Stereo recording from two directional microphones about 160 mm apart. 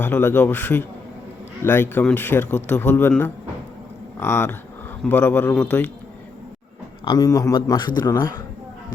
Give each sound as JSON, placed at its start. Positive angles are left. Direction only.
{"t": 0.0, "sound": "speech", "side_deg": 10}
{"t": 7.0, "sound": "a man's voice", "side_deg": 25}